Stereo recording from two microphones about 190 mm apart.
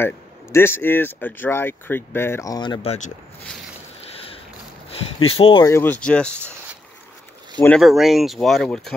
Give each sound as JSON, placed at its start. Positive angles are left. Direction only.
{"t": 0.0, "sound": "speech", "side_deg": 10}
{"t": 4.0, "sound": "a sound", "side_deg": 30}
{"t": 4.9, "sound": "speech", "side_deg": 30}
{"t": 5.7, "sound": "speech", "side_deg": 10}
{"t": 7.5, "sound": "speech", "side_deg": 5}